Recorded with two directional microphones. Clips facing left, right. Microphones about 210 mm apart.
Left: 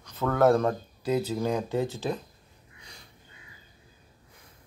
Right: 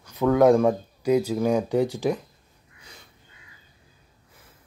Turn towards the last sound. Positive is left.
turn(degrees=0)  # may be behind; listen again after turning